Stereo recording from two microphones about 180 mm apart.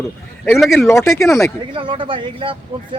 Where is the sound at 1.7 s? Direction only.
30° right (ahead or behind).